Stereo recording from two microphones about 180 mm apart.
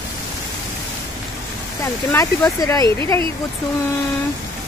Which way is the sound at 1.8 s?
15° left (ahead or behind).